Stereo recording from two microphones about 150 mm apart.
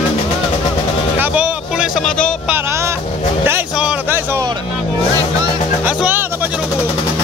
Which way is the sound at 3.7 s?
5° right (ahead or behind).